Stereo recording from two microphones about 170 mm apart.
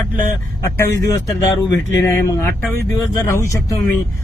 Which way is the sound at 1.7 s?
15° left (ahead or behind).